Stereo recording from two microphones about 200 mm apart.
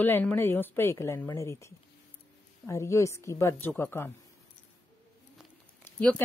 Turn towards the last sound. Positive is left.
turn(degrees=10)  # may be behind; listen again after turning